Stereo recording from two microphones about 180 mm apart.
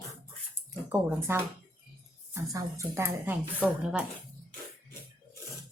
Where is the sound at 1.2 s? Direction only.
15° right (ahead or behind).